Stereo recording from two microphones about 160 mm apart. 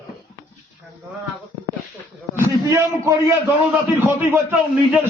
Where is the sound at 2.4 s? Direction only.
15° right (ahead or behind).